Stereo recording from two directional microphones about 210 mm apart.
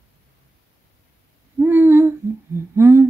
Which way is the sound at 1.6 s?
10° right (ahead or behind).